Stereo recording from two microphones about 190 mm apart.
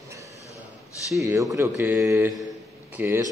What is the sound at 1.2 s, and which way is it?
A man's voice, 15° right (ahead or behind).